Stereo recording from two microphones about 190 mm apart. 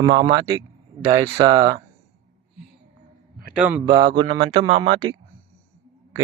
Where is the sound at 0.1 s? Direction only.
25° right (ahead or behind).